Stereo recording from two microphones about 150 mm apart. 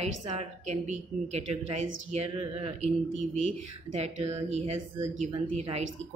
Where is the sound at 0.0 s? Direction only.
50° right (ahead or behind).